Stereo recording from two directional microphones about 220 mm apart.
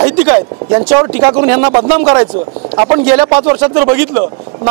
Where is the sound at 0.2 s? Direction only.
30° right (ahead or behind).